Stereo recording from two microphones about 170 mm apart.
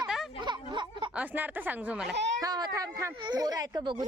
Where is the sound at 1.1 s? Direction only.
10° right (ahead or behind).